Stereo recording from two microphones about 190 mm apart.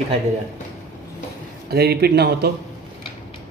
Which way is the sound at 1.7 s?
55° right (ahead or behind).